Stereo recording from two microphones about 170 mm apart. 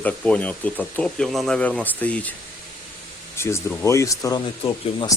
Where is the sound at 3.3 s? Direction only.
15° left (ahead or behind).